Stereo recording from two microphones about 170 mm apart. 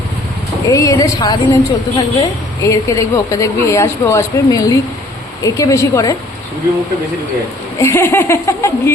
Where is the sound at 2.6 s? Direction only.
20° left (ahead or behind).